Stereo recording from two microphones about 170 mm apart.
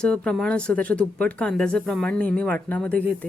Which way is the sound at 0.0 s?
5° left (ahead or behind).